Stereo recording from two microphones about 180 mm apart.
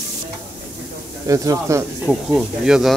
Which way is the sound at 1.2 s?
20° right (ahead or behind).